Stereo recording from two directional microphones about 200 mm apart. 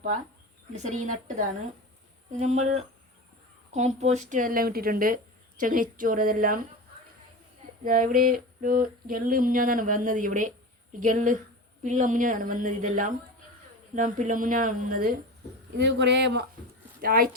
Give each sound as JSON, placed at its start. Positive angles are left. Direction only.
{"t": 0.8, "sound": "a woman's voice", "side_deg": -35}
{"t": 7.9, "sound": "a woman's voice", "side_deg": -45}
{"t": 15.8, "sound": "speech", "side_deg": -60}
{"t": 17.0, "sound": "speech", "side_deg": -45}